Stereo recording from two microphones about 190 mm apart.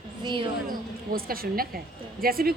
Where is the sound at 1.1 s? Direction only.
50° right (ahead or behind).